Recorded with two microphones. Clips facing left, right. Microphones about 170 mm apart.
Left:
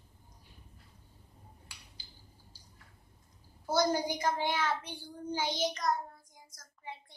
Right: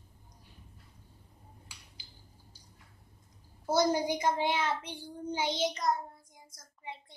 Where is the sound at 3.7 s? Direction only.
20° right (ahead or behind).